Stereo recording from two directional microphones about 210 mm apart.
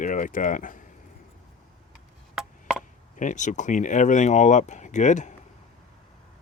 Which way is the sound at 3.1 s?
35° left (ahead or behind).